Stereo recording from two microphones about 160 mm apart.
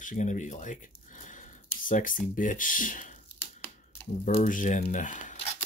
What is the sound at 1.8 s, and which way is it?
Speech, 55° left (ahead or behind).